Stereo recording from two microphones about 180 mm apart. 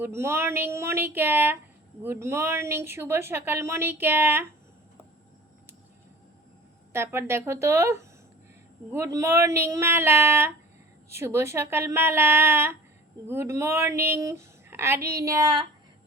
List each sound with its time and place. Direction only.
0.0 s speech: 15° right (ahead or behind)
6.9 s speech: 15° right (ahead or behind)